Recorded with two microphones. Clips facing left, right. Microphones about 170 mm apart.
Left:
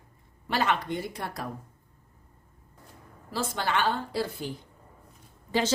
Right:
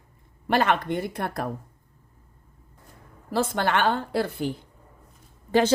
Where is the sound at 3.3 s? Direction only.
55° right (ahead or behind).